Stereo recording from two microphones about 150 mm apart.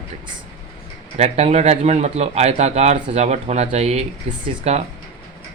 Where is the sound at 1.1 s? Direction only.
45° right (ahead or behind).